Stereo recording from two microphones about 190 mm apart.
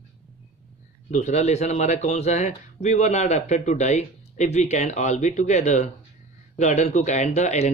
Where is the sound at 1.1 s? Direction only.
35° left (ahead or behind).